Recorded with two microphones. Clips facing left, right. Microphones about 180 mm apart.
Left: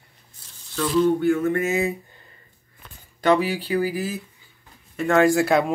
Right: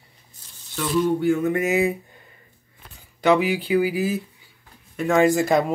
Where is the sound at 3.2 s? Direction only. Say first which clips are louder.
Right 1 dB; 10° right (ahead or behind).